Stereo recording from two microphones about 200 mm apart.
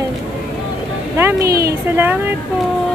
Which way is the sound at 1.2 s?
10° right (ahead or behind).